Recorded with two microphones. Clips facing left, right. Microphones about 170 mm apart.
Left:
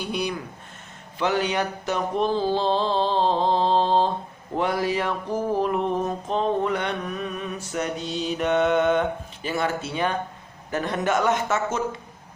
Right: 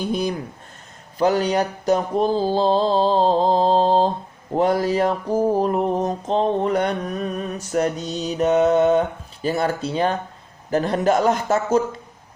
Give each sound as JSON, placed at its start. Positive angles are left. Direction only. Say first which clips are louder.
{"t": 0.0, "sound": "speech", "louder": "right 5 dB", "side_deg": -40}
{"t": 1.2, "sound": "mantra", "louder": "right 5 dB", "side_deg": -40}